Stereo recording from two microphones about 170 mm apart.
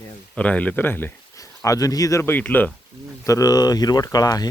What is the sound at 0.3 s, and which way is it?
A man's voice, 10° left (ahead or behind).